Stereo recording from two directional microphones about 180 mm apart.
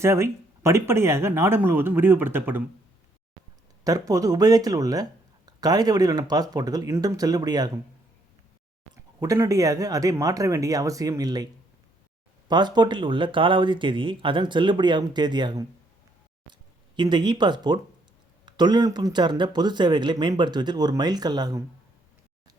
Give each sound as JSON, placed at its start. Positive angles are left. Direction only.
{"t": 0.0, "sound": "speech", "side_deg": -15}
{"t": 3.8, "sound": "speech", "side_deg": -20}
{"t": 9.2, "sound": "speech", "side_deg": -20}
{"t": 12.5, "sound": "speech", "side_deg": -25}